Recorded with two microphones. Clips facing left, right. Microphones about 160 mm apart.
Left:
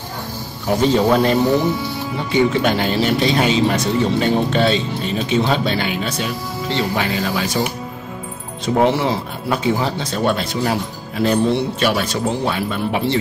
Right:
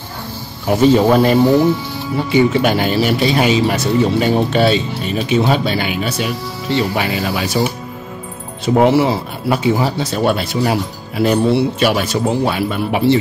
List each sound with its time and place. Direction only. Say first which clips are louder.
0.7 s speech: right 4 dB; 10° right (ahead or behind)
8.6 s speech: right 4 dB; 5° right (ahead or behind)